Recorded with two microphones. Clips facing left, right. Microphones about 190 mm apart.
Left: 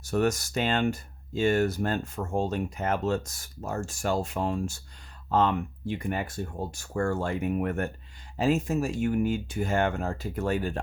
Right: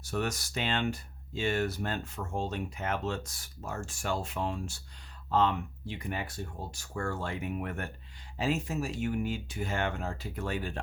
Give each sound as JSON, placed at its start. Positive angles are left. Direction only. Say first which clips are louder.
{"t": 0.0, "sound": "speech", "louder": "left 8 dB", "side_deg": 45}